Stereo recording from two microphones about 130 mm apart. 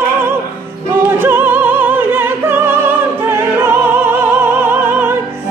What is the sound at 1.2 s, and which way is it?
Opera, 15° right (ahead or behind).